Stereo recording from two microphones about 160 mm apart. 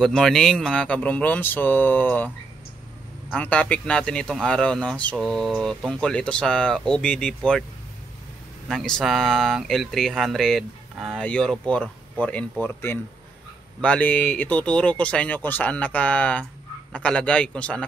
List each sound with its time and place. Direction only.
0.0 s speech: centre (ahead or behind)
3.3 s speech: 10° left (ahead or behind)
8.6 s speech: 5° left (ahead or behind)